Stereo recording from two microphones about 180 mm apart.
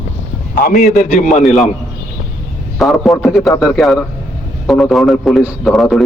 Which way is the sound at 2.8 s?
Centre (ahead or behind).